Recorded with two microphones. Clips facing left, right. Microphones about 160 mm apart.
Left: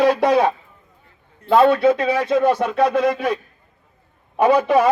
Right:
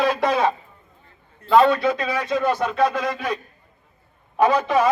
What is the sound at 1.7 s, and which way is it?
A man's voice, 60° left (ahead or behind).